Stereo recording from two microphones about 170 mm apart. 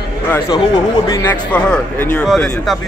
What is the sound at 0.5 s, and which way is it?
Speech, 25° left (ahead or behind).